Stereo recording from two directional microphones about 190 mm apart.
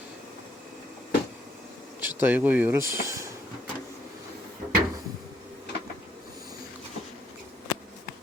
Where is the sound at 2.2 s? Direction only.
10° right (ahead or behind).